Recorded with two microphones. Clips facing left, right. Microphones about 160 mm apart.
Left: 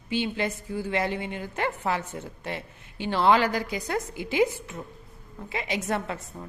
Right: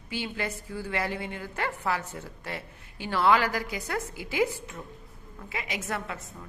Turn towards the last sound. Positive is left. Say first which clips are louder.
# left 4 dB
turn(degrees=30)  # may be behind; listen again after turning